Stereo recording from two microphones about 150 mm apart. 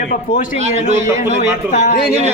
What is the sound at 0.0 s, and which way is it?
Speech, 75° left (ahead or behind).